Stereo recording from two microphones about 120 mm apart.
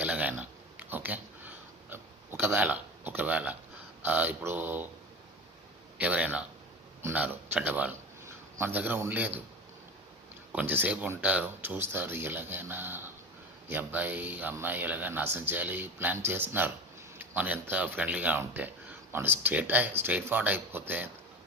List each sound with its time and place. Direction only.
0.0 s a sound: 10° right (ahead or behind)
4.0 s speech: 15° right (ahead or behind)
6.0 s a man's voice: 10° right (ahead or behind)
10.5 s speech: 15° right (ahead or behind)